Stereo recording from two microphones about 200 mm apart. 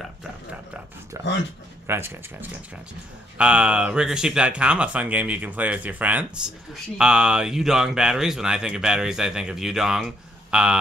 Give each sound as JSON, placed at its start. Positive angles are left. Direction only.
{"t": 1.1, "sound": "speech", "side_deg": -15}
{"t": 3.3, "sound": "speech", "side_deg": -5}